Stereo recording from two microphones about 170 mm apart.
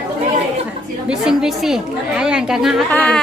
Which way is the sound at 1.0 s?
5° right (ahead or behind).